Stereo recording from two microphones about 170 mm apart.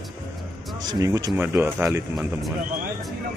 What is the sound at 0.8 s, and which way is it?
Speech, 20° right (ahead or behind).